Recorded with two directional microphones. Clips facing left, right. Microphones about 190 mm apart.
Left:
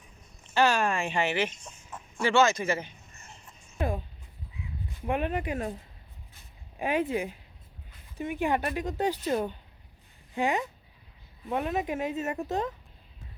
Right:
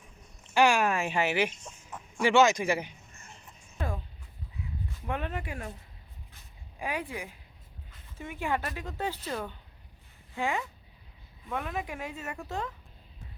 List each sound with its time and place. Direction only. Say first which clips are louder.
0.5 s speech: right 1 dB; 10° right (ahead or behind)
3.8 s speech: left 5 dB; 15° left (ahead or behind)
5.0 s speech: left 6 dB; 15° left (ahead or behind)
6.7 s speech: left 7 dB; 25° left (ahead or behind)
10.3 s speech: left 4 dB; 20° left (ahead or behind)